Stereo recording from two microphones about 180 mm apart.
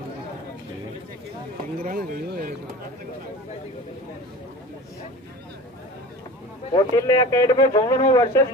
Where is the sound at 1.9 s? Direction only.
55° right (ahead or behind).